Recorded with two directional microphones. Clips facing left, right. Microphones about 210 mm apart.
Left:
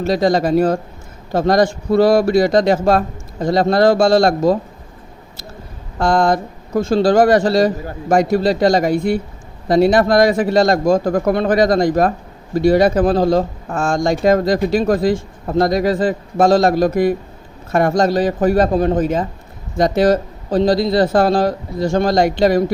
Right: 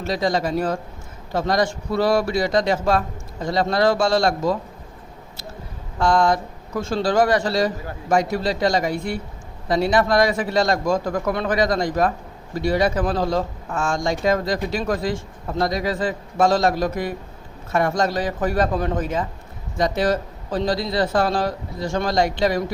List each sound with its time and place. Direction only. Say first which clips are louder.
0.1 s speech: left 7 dB; 40° left (ahead or behind)
6.0 s speech: left 3 dB; 40° left (ahead or behind)
19.7 s speech: left 7 dB; 40° left (ahead or behind)